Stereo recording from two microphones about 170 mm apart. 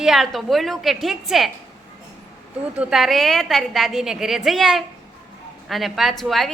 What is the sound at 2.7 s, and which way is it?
A woman's voice, 5° right (ahead or behind).